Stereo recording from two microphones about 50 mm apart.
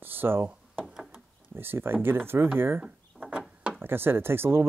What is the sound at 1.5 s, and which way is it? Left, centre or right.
Speech, right.